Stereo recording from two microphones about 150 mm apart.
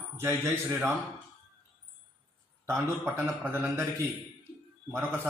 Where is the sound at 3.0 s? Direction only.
15° right (ahead or behind).